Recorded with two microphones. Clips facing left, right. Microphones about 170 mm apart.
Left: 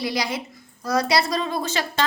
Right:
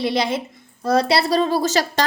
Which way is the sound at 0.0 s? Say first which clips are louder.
Right 5 dB; 25° right (ahead or behind).